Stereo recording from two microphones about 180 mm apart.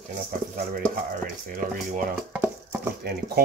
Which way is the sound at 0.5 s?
55° right (ahead or behind).